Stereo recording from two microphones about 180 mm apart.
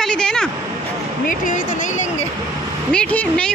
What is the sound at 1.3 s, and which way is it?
Speech, 45° left (ahead or behind).